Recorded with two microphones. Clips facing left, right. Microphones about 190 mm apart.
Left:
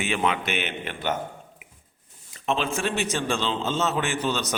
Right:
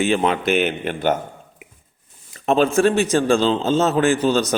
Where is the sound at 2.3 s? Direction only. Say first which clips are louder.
Right 10 dB; 45° right (ahead or behind).